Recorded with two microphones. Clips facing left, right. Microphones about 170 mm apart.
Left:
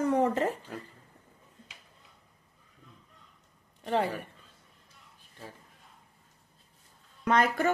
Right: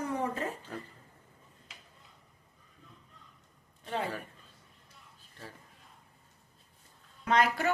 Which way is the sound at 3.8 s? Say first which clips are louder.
Left 6 dB; 65° left (ahead or behind).